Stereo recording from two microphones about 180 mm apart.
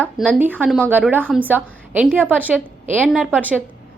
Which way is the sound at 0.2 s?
10° right (ahead or behind).